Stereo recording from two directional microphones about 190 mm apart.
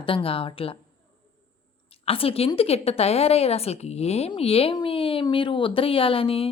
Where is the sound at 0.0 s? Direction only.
30° left (ahead or behind).